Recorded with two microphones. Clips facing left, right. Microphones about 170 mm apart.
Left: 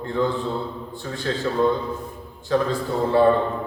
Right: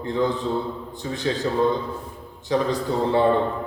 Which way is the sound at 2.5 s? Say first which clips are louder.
Even; 20° right (ahead or behind).